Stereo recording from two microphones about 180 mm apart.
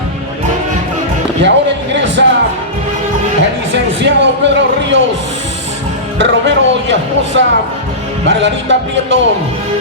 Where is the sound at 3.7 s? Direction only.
80° right.